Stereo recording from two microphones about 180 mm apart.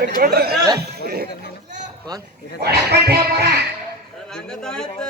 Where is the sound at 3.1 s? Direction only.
65° right (ahead or behind).